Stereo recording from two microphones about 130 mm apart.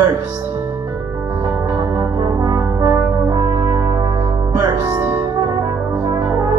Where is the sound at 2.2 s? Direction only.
30° right (ahead or behind).